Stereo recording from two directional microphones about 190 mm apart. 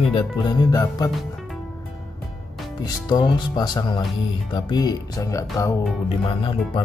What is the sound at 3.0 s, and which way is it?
Speech, 20° left (ahead or behind).